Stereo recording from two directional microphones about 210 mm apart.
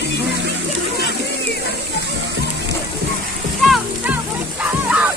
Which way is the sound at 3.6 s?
Centre (ahead or behind).